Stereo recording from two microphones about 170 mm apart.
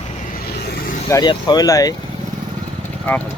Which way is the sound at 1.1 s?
20° left (ahead or behind).